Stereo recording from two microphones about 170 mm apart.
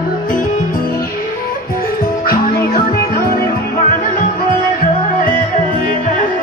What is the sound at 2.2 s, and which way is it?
Music, 60° left (ahead or behind).